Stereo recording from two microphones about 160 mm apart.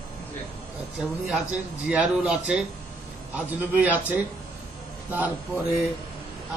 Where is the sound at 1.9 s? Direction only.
5° right (ahead or behind).